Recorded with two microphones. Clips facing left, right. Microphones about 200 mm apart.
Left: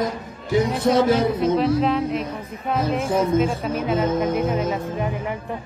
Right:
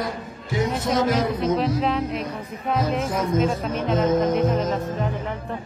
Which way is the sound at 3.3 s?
10° left (ahead or behind).